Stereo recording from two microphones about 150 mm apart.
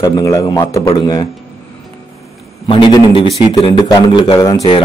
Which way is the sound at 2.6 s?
35° left (ahead or behind).